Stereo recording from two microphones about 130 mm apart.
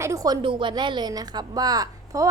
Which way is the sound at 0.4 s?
40° right (ahead or behind).